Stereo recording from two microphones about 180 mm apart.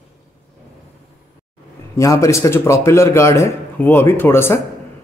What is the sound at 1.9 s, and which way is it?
A man's voice, 15° left (ahead or behind).